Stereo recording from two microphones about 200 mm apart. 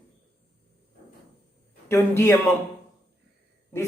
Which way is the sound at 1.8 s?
10° left (ahead or behind).